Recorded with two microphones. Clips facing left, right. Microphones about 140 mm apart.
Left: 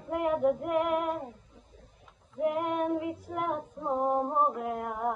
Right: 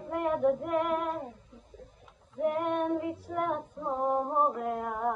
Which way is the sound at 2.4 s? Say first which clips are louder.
Even; 5° left (ahead or behind).